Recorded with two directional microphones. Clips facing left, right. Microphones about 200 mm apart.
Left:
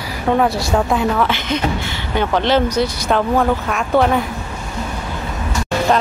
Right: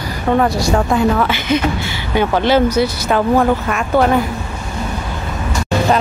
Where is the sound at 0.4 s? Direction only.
5° left (ahead or behind).